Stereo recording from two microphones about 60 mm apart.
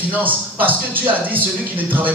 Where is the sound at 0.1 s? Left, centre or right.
Right.